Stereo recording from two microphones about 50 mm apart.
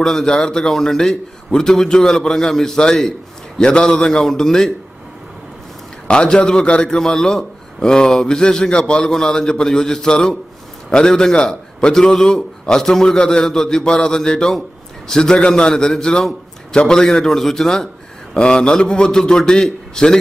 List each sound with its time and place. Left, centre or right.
0.0 s a man's voice: centre
6.0 s a man's voice: centre